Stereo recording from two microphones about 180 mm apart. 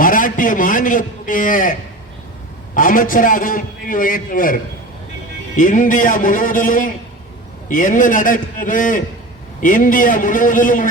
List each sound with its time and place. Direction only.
0.0 s a man's voice: 50° left (ahead or behind)
2.7 s a man's voice: 50° left (ahead or behind)
5.5 s a man's voice: 45° left (ahead or behind)